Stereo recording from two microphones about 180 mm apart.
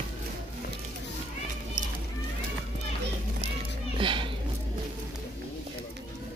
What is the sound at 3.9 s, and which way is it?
Cat, 30° right (ahead or behind).